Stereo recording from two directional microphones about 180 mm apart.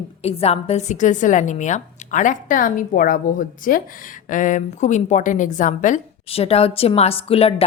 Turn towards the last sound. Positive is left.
turn(degrees=35)  # may be behind; listen again after turning